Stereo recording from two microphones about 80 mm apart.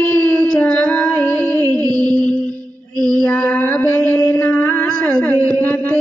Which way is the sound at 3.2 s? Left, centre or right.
Centre.